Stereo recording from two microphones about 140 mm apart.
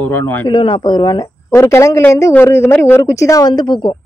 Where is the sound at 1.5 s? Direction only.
20° left (ahead or behind).